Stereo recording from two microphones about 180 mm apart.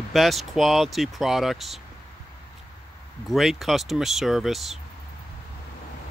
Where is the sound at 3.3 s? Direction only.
Centre (ahead or behind).